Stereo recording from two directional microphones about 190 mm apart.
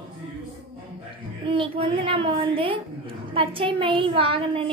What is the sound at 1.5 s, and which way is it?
A woman's voice, 30° right (ahead or behind).